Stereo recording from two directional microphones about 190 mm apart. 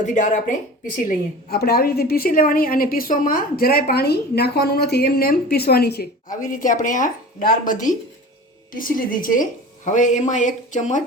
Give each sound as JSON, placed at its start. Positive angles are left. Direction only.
{"t": 0.0, "sound": "a woman's voice", "side_deg": 40}